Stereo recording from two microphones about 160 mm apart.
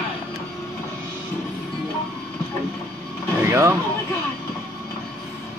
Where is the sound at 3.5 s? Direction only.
20° right (ahead or behind).